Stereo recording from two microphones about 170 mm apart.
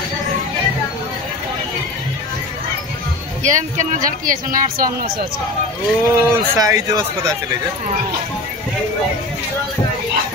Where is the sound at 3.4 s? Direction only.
50° right (ahead or behind).